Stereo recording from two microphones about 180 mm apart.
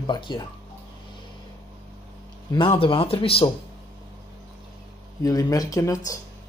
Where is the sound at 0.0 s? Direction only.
25° left (ahead or behind).